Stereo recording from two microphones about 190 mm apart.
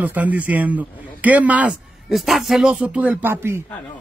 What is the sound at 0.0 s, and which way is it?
A man's voice, 10° right (ahead or behind).